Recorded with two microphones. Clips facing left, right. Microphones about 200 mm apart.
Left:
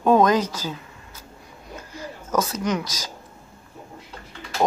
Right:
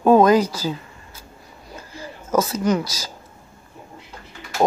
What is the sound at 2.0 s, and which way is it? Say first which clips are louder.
Speech: right 4 dB; 5° right (ahead or behind).